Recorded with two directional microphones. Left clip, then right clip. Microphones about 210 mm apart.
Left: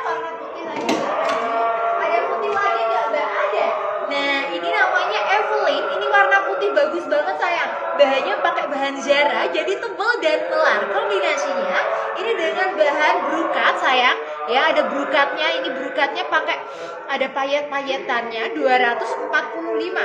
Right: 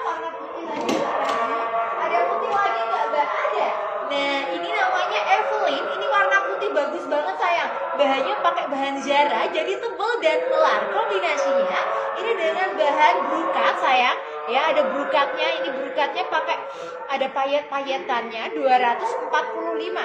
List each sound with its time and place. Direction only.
4.7 s chatter: 15° left (ahead or behind)
8.0 s a sound: 15° left (ahead or behind)
9.1 s a woman's voice: 15° left (ahead or behind)
17.2 s a woman's voice: 25° left (ahead or behind)